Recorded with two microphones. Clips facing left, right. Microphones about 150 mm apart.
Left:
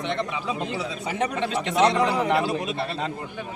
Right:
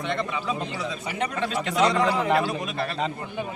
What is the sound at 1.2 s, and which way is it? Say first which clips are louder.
Speech: left 1 dB; 25° left (ahead or behind).